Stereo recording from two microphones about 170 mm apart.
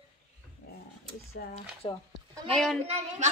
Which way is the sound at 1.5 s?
35° left (ahead or behind).